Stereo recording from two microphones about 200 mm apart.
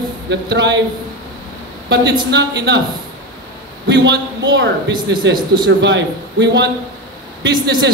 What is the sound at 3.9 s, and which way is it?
Speech, 60° right (ahead or behind).